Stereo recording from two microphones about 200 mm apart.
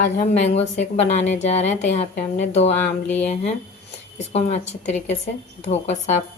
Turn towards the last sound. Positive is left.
turn(degrees=35)  # may be behind; listen again after turning